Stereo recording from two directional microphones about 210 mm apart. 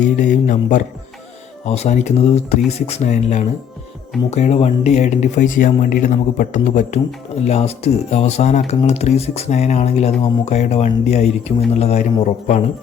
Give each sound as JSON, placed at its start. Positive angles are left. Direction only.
{"t": 0.2, "sound": "speech", "side_deg": 35}